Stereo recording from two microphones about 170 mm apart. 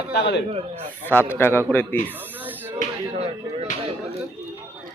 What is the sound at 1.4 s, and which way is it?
Speech, 15° left (ahead or behind).